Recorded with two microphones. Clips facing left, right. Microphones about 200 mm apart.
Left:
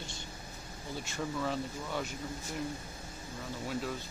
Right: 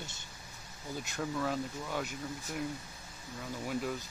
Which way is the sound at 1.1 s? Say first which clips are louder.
Even; 5° right (ahead or behind).